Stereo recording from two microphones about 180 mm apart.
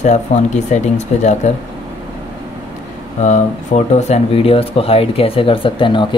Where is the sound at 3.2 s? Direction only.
40° left (ahead or behind).